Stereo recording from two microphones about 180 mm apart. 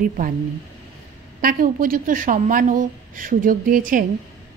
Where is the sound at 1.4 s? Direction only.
50° right (ahead or behind).